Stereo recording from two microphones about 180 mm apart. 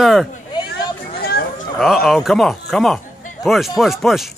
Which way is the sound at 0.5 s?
25° left (ahead or behind).